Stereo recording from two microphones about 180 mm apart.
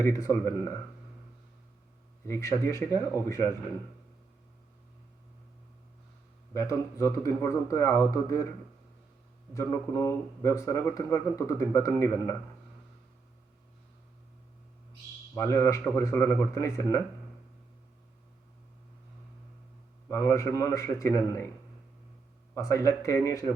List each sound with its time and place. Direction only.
0.0 s speech: 15° left (ahead or behind)
2.2 s speech: 15° left (ahead or behind)
6.5 s speech: 15° left (ahead or behind)
9.6 s speech: 15° left (ahead or behind)
15.4 s speech: 15° left (ahead or behind)
20.1 s speech: 15° left (ahead or behind)
22.5 s speech: 15° left (ahead or behind)